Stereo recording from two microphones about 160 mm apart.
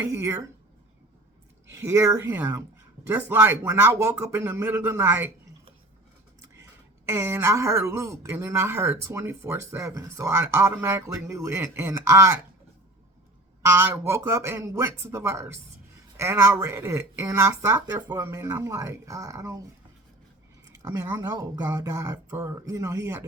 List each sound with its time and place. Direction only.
0.0 s speech: 15° right (ahead or behind)
1.6 s speech: 15° right (ahead or behind)
6.4 s speech: 15° right (ahead or behind)
13.6 s speech: 15° right (ahead or behind)
20.9 s speech: 15° right (ahead or behind)
21.2 s speech: 25° right (ahead or behind)